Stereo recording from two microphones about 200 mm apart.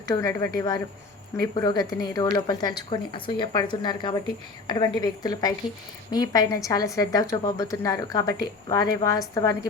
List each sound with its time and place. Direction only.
0.1 s a woman's voice: 15° left (ahead or behind)